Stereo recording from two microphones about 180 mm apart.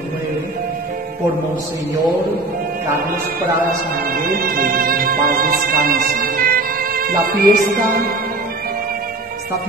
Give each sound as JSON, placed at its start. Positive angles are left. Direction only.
{"t": 4.0, "sound": "music", "side_deg": -55}